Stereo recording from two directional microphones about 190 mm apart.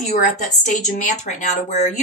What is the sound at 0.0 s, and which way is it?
A woman's voice, 40° left (ahead or behind).